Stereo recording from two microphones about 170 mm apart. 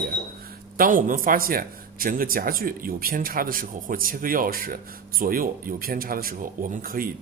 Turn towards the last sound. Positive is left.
turn(degrees=-55)  # may be behind; listen again after turning